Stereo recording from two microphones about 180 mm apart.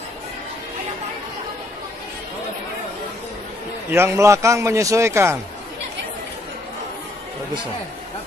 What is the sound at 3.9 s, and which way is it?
A man's voice, 15° right (ahead or behind).